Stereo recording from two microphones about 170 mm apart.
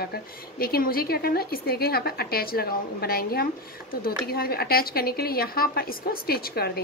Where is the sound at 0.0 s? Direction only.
65° left (ahead or behind).